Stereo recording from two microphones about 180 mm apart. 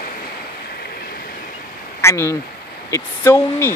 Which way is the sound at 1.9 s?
15° left (ahead or behind).